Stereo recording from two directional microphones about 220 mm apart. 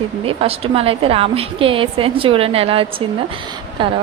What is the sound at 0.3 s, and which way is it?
A woman's voice, 25° right (ahead or behind).